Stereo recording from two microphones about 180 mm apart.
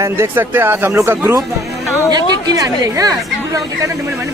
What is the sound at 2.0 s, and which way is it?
Music, 20° right (ahead or behind).